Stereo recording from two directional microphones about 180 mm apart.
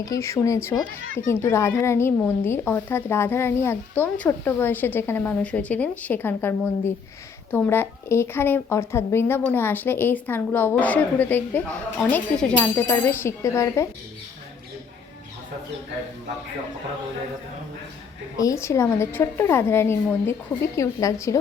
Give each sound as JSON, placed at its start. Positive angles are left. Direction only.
{"t": 0.0, "sound": "speech", "side_deg": 15}
{"t": 18.3, "sound": "speech", "side_deg": 15}